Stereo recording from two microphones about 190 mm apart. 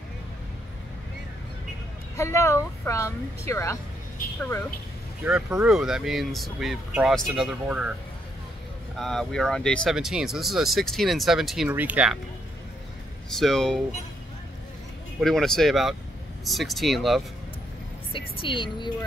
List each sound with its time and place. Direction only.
2.1 s speech: 15° left (ahead or behind)
5.2 s speech: 5° right (ahead or behind)
8.9 s speech: centre (ahead or behind)
13.3 s speech: centre (ahead or behind)
15.1 s speech: centre (ahead or behind)
18.1 s a woman's voice: 30° left (ahead or behind)